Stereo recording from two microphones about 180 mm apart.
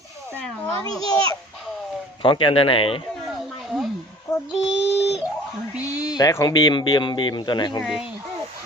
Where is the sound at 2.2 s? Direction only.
30° left (ahead or behind).